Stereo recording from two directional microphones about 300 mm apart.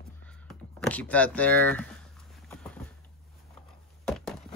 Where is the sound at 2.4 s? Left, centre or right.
Centre.